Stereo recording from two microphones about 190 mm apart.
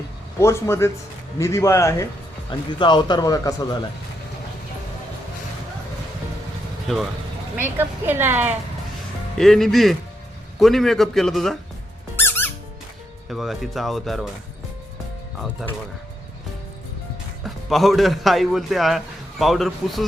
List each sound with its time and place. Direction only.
0.3 s speech: 15° left (ahead or behind)
6.9 s speech: centre (ahead or behind)
7.5 s a woman's voice: 10° right (ahead or behind)
9.4 s speech: centre (ahead or behind)
12.1 s music: 10° left (ahead or behind)
13.2 s speech: centre (ahead or behind)
17.4 s a man's voice: centre (ahead or behind)